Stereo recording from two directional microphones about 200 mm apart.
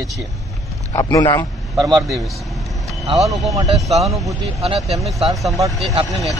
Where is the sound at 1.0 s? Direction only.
20° left (ahead or behind).